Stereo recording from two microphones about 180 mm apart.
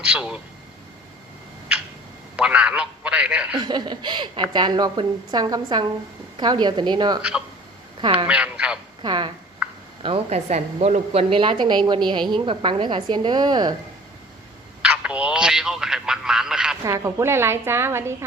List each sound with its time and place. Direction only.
0.0 s speech: 5° right (ahead or behind)
2.3 s a man's voice: 5° right (ahead or behind)
3.6 s a woman's voice: 25° right (ahead or behind)
7.2 s a woman's voice: 5° right (ahead or behind)
8.0 s a woman's voice: 25° right (ahead or behind)
8.3 s speech: 5° right (ahead or behind)
9.0 s a woman's voice: 25° right (ahead or behind)
9.6 s a sound: 5° right (ahead or behind)
10.0 s a woman's voice: 35° right (ahead or behind)
14.8 s speech: 5° right (ahead or behind)
16.8 s a woman's voice: 15° right (ahead or behind)